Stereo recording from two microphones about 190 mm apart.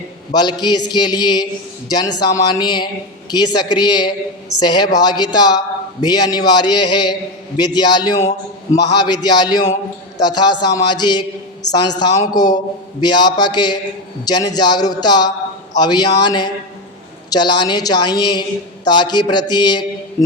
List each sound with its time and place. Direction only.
0.6 s a man's voice: 20° left (ahead or behind)